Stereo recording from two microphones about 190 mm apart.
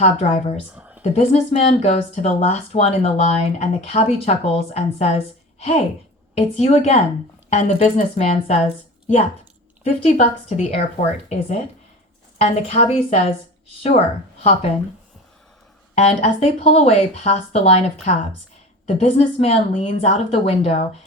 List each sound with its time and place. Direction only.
0.0 s speech: 35° left (ahead or behind)
9.8 s speech: 35° left (ahead or behind)
16.0 s speech: 35° left (ahead or behind)